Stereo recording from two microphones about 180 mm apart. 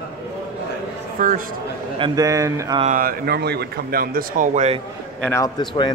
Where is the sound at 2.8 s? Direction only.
50° right (ahead or behind).